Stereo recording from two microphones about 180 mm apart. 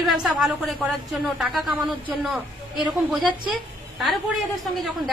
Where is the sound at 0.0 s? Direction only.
Centre (ahead or behind).